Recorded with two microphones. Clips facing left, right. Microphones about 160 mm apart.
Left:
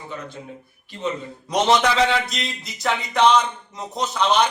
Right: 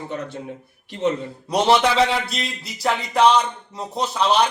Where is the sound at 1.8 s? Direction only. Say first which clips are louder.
Right 1 dB; 30° right (ahead or behind).